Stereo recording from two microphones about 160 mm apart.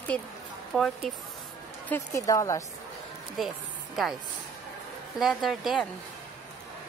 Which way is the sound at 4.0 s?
Centre (ahead or behind).